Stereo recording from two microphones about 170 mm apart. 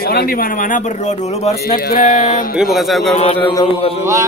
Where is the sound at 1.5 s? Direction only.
60° left (ahead or behind).